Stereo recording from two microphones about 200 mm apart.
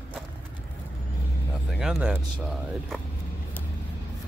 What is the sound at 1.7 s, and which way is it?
Speech, 5° right (ahead or behind).